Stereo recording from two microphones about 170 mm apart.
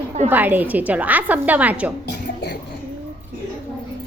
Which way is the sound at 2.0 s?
80° left.